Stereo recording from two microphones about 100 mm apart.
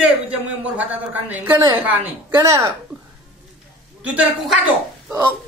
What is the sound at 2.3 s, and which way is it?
Speech, 30° right (ahead or behind).